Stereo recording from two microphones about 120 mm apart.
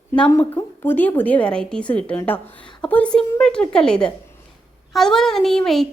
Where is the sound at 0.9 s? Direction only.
15° left (ahead or behind).